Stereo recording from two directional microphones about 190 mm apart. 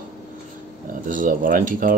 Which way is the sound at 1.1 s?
45° right (ahead or behind).